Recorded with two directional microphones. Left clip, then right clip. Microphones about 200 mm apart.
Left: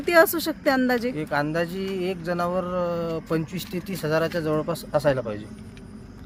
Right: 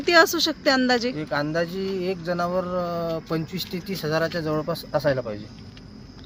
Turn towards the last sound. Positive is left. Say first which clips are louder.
# left 1 dB
turn(degrees=0)  # may be behind; listen again after turning